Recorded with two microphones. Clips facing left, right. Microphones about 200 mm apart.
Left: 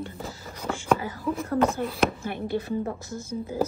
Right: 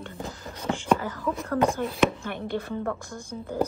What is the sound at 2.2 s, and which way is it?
Speech, 50° right (ahead or behind).